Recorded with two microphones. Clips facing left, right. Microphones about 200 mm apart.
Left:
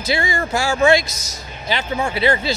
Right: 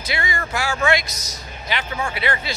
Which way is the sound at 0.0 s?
25° left (ahead or behind).